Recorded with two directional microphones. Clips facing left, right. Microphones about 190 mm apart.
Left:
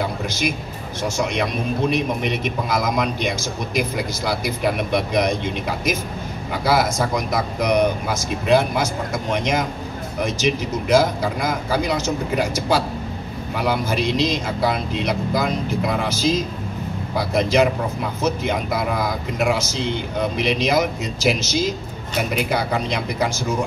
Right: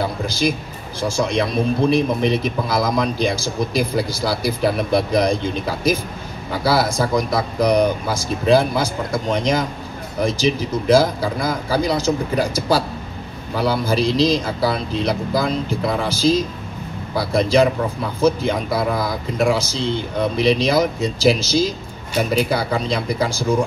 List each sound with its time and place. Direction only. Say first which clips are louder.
1.0 s a man's voice: right 3 dB; 30° right (ahead or behind)